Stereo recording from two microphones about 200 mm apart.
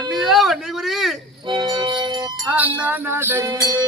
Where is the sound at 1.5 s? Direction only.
20° right (ahead or behind).